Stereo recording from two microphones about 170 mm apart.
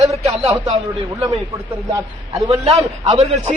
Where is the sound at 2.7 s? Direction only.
40° right (ahead or behind).